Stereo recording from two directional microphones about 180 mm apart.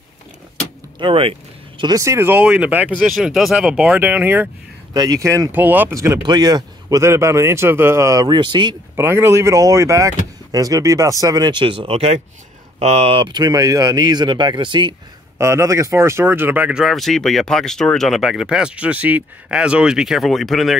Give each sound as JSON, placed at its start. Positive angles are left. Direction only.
{"t": 0.9, "sound": "speech", "side_deg": -30}
{"t": 4.9, "sound": "speech", "side_deg": -20}
{"t": 8.9, "sound": "speech", "side_deg": -15}